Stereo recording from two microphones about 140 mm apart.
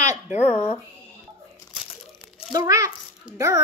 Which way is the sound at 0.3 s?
50° left (ahead or behind).